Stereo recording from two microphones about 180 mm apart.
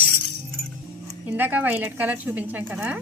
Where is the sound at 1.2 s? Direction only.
10° right (ahead or behind).